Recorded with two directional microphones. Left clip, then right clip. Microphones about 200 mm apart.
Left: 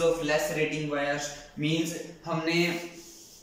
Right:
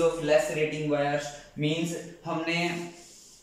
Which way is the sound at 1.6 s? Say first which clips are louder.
Right 1 dB; 20° right (ahead or behind).